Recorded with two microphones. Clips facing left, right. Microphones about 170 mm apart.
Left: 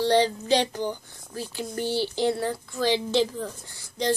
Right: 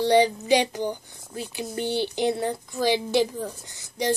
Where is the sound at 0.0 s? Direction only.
15° right (ahead or behind).